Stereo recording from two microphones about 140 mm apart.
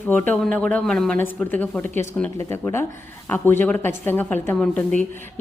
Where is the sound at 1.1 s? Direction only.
15° left (ahead or behind).